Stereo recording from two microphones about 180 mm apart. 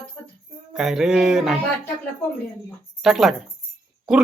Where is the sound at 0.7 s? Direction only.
5° right (ahead or behind).